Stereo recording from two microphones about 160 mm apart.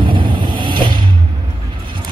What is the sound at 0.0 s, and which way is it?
Vehicle, 30° right (ahead or behind).